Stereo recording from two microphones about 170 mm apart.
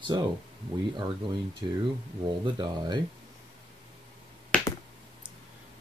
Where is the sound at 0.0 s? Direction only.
25° right (ahead or behind).